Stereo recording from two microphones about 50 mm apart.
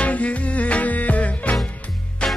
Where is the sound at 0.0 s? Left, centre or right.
Left.